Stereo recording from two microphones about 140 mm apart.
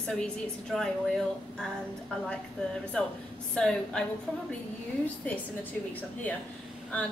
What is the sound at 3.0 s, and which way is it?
A woman's voice, 5° left (ahead or behind).